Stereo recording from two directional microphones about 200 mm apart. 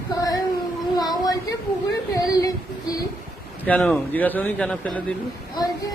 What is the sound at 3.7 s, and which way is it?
Speech, 5° left (ahead or behind).